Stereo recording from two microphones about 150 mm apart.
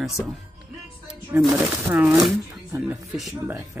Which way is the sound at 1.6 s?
5° right (ahead or behind).